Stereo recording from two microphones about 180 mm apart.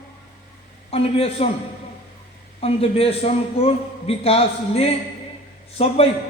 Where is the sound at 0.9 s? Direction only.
30° left (ahead or behind).